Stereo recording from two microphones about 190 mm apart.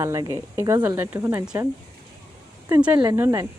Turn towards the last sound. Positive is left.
turn(degrees=-15)  # may be behind; listen again after turning